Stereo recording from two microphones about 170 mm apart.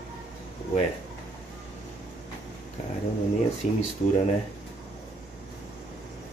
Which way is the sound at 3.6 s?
50° left (ahead or behind).